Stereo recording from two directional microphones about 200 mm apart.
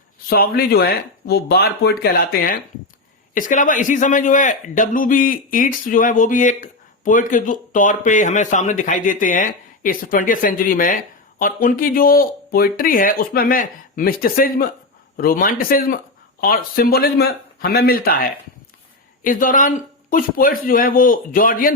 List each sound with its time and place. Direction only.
0.3 s a man's voice: 50° left (ahead or behind)